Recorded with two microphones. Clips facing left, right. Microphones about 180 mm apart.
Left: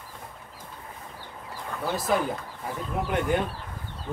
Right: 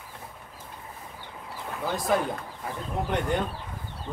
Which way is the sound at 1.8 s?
Centre (ahead or behind).